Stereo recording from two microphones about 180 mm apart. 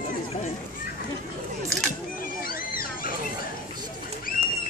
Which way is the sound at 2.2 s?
50° left (ahead or behind).